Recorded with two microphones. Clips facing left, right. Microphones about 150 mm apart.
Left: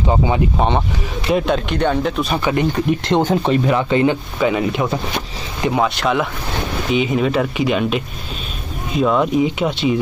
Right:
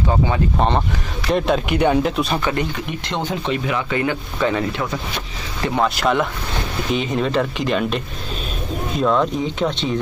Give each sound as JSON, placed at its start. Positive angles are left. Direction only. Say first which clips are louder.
{"t": 0.1, "sound": "speech", "louder": "left 3 dB", "side_deg": 20}
{"t": 0.6, "sound": "speech", "louder": "left 1 dB", "side_deg": 0}
{"t": 3.1, "sound": "speech", "louder": "left 6 dB", "side_deg": 45}
{"t": 4.4, "sound": "speech", "louder": "left 1 dB", "side_deg": 10}
{"t": 5.8, "sound": "speech", "louder": "even", "side_deg": 0}